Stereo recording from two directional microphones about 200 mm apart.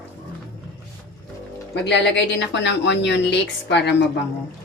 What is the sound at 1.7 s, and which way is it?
A woman's voice, 60° left (ahead or behind).